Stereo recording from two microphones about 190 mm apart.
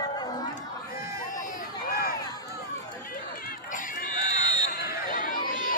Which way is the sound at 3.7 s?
45° left (ahead or behind).